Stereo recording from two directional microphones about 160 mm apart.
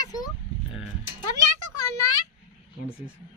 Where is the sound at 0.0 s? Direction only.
25° left (ahead or behind).